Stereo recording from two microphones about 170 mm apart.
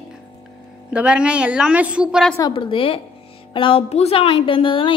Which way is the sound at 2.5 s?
30° left (ahead or behind).